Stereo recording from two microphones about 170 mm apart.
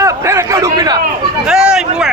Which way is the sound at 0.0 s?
15° right (ahead or behind).